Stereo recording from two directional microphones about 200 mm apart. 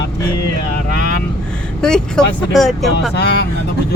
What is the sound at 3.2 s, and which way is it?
Speech, 55° left (ahead or behind).